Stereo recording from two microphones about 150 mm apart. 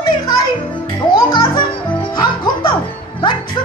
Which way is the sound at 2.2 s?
30° left (ahead or behind).